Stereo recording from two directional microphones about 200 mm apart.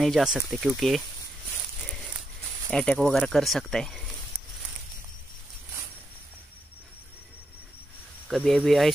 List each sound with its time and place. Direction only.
0.0 s speech: centre (ahead or behind)
2.7 s speech: 5° left (ahead or behind)
8.3 s speech: centre (ahead or behind)